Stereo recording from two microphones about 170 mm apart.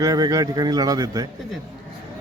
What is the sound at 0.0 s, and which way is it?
A man's voice, 20° right (ahead or behind).